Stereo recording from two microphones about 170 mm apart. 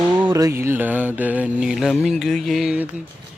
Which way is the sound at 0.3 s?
15° right (ahead or behind).